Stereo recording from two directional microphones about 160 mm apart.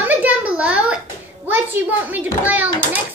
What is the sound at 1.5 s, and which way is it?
A child's voice, 10° right (ahead or behind).